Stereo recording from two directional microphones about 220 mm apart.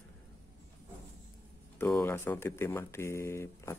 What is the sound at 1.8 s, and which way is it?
Speech, 10° left (ahead or behind).